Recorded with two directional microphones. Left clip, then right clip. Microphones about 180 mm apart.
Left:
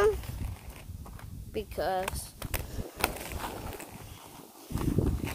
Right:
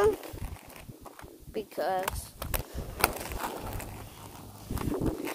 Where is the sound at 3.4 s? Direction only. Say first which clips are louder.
Right 2 dB; 50° right (ahead or behind).